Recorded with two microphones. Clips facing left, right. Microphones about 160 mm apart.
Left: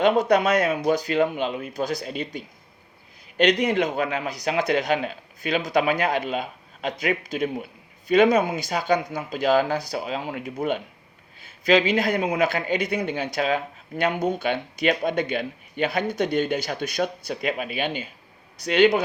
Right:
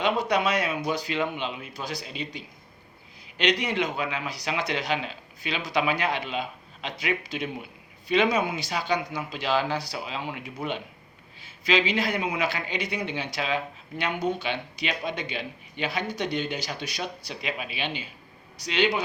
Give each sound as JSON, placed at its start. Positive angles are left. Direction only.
{"t": 0.0, "sound": "speech", "side_deg": 50}